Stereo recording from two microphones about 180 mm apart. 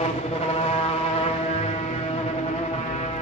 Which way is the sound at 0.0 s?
35° left (ahead or behind).